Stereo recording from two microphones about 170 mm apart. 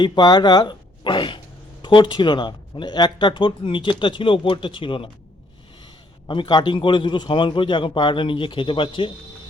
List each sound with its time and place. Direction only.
0.0 s a man's voice: 25° left (ahead or behind)